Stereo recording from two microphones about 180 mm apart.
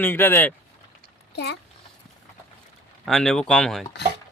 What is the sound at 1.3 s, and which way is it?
Speech, 70° left (ahead or behind).